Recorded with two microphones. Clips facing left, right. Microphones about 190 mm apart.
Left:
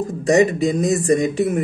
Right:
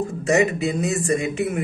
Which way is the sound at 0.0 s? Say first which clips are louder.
Left 4 dB; 35° left (ahead or behind).